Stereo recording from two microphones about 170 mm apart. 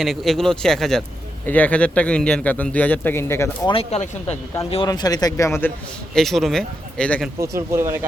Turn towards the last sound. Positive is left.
turn(degrees=-15)  # may be behind; listen again after turning